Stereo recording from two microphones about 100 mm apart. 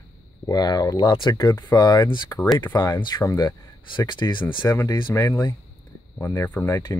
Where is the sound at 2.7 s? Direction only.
45° left (ahead or behind).